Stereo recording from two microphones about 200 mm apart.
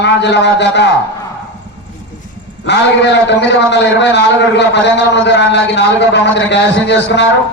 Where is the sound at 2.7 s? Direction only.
60° left (ahead or behind).